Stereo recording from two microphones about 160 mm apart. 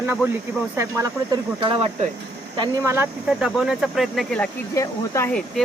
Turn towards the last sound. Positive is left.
turn(degrees=5)  # may be behind; listen again after turning